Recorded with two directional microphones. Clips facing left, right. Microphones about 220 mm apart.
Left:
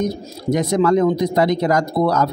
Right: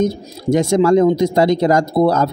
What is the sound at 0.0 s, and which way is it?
Speech, 30° right (ahead or behind).